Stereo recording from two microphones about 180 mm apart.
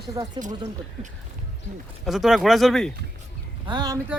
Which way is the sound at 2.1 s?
Centre (ahead or behind).